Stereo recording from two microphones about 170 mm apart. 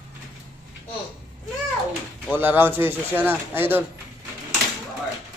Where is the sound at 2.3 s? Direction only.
10° right (ahead or behind).